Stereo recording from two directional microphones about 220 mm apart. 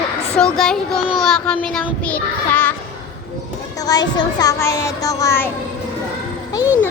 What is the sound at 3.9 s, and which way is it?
Child singing, 20° left (ahead or behind).